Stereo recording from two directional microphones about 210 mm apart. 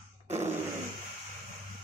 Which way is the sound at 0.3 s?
30° right (ahead or behind).